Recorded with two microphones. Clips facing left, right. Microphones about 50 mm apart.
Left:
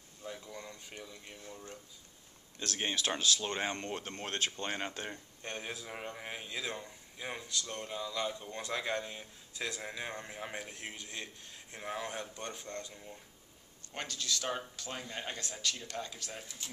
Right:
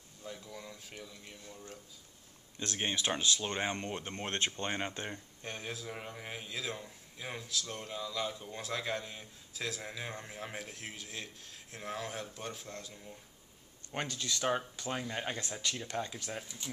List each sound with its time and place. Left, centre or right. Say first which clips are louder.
0.2 s a sound: left 1 dB; centre
0.5 s speech: left 1 dB; centre
3.3 s speech: even; centre
5.4 s speech: left 1 dB; centre
13.9 s speech: right 1 dB; right